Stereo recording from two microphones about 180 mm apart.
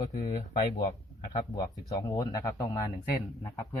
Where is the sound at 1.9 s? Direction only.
20° left (ahead or behind).